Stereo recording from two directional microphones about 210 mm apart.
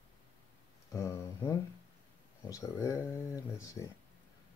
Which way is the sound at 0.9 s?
15° left (ahead or behind).